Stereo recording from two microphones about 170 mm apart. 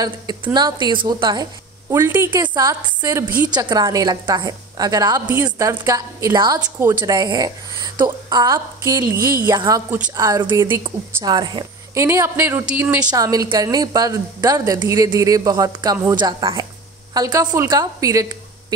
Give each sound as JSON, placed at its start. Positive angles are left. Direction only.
{"t": 0.0, "sound": "a woman's voice", "side_deg": -25}
{"t": 13.1, "sound": "a woman's voice", "side_deg": -20}